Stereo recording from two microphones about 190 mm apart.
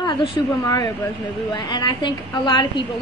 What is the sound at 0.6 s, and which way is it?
A woman's voice, 20° left (ahead or behind).